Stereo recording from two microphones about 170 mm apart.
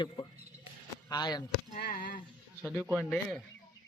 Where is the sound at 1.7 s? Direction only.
55° left (ahead or behind).